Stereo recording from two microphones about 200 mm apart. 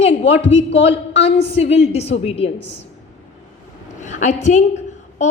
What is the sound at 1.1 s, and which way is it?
Speech, 60° left (ahead or behind).